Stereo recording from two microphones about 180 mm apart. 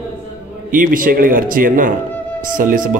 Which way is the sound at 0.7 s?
50° right (ahead or behind).